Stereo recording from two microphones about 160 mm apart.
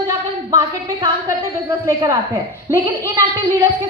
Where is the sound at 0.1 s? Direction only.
20° right (ahead or behind).